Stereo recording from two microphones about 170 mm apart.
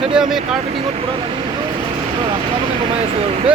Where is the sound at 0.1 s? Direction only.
5° right (ahead or behind).